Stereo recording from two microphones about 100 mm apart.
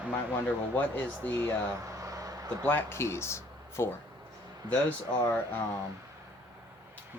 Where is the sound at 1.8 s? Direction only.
35° right (ahead or behind).